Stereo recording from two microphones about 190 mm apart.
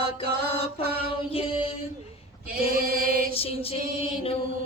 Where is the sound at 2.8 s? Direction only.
50° right (ahead or behind).